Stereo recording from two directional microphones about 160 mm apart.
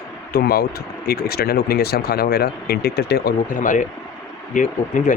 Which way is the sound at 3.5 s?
55° left (ahead or behind).